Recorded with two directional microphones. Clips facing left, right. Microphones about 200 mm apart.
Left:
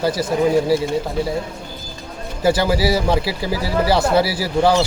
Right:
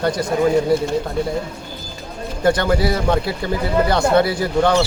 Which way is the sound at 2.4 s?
5° left (ahead or behind).